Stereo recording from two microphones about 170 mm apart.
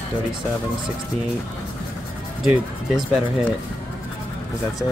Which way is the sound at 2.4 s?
Centre (ahead or behind).